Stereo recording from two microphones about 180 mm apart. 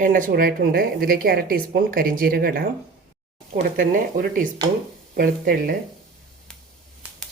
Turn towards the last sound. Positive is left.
turn(degrees=5)  # may be behind; listen again after turning